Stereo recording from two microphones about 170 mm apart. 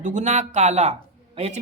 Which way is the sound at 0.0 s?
45° right (ahead or behind).